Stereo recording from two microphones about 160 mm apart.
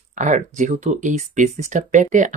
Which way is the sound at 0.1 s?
50° right (ahead or behind).